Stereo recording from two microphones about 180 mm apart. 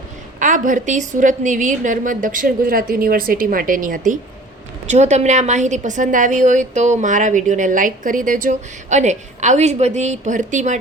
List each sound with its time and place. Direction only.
0.3 s a woman's voice: 45° right (ahead or behind)